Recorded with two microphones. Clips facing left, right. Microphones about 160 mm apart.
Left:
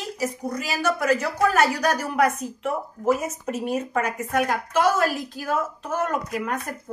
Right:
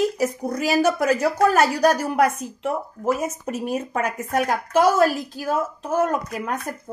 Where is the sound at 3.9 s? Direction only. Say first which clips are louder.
Right 1 dB; 40° right (ahead or behind).